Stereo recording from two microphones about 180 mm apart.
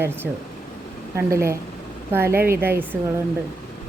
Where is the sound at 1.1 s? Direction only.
15° right (ahead or behind).